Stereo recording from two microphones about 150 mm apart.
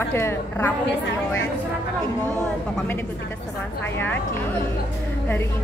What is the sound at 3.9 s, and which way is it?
Speech, 10° left (ahead or behind).